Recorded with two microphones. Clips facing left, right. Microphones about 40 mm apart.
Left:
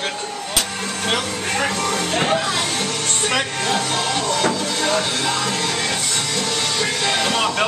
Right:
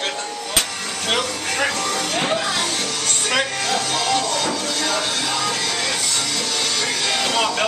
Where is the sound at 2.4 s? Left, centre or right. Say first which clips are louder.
Left 1 dB; left.